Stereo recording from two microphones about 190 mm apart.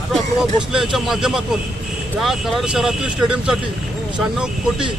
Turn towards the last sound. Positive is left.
turn(degrees=-5)  # may be behind; listen again after turning